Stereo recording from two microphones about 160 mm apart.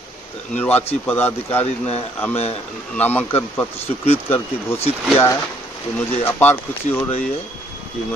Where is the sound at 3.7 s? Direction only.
40° left (ahead or behind).